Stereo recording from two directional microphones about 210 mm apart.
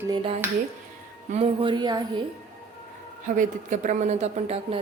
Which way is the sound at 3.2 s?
40° right (ahead or behind).